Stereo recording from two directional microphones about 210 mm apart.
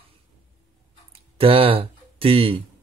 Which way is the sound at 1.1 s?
25° right (ahead or behind).